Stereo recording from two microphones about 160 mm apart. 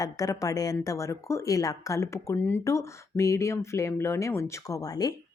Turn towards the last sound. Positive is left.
turn(degrees=25)  # may be behind; listen again after turning